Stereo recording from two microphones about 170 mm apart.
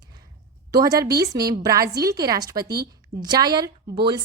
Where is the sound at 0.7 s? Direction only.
20° right (ahead or behind).